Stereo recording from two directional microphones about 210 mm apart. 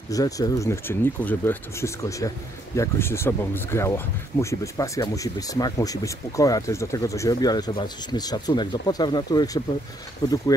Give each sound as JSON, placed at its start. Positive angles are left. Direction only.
{"t": 0.1, "sound": "speech", "side_deg": 15}